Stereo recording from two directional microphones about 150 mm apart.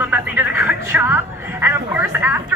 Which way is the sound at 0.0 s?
10° right (ahead or behind).